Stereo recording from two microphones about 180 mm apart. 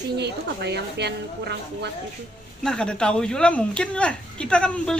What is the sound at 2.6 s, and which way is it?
Speech, 5° left (ahead or behind).